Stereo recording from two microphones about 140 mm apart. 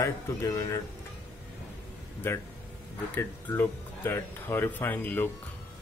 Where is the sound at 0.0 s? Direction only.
25° left (ahead or behind).